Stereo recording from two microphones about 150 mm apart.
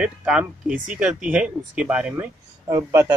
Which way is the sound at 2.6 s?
20° right (ahead or behind).